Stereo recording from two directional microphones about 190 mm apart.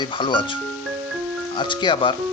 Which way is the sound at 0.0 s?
25° left (ahead or behind).